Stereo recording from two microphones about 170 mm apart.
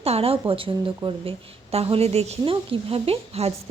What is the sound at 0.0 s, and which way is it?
A woman's voice, 35° right (ahead or behind).